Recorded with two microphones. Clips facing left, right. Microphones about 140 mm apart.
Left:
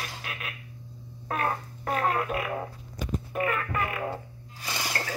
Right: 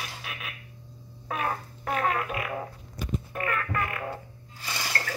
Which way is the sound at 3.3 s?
15° left (ahead or behind).